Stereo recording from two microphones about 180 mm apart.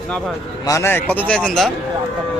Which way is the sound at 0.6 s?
15° left (ahead or behind).